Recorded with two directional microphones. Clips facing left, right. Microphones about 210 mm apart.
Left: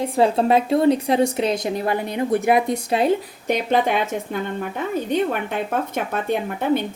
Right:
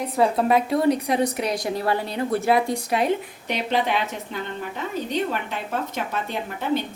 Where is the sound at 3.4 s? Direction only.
50° left (ahead or behind).